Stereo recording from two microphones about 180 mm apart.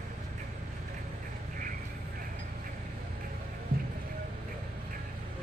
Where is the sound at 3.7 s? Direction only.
55° right (ahead or behind).